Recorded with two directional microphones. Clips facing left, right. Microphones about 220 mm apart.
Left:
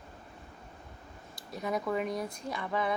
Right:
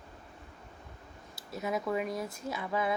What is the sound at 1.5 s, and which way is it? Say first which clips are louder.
Speech: even; 5° right (ahead or behind).